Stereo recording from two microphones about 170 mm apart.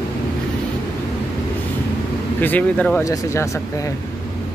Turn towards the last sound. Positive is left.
turn(degrees=20)  # may be behind; listen again after turning